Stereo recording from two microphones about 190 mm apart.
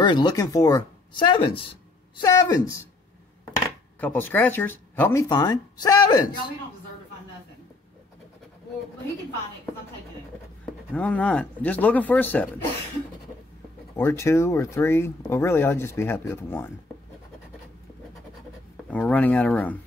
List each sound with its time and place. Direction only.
0.0 s speech: 25° left (ahead or behind)
5.3 s speech: 20° left (ahead or behind)
10.6 s speech: 5° left (ahead or behind)
13.9 s speech: 15° left (ahead or behind)
18.9 s speech: 5° left (ahead or behind)